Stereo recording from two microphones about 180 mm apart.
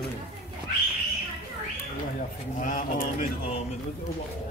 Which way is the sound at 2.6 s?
45° left (ahead or behind).